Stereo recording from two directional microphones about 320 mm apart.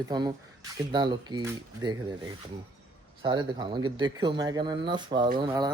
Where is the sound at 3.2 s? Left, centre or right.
Centre.